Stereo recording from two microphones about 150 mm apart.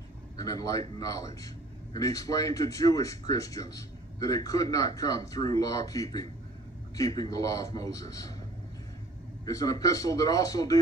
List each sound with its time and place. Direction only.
0.4 s speech: 25° left (ahead or behind)
9.5 s speech: 25° left (ahead or behind)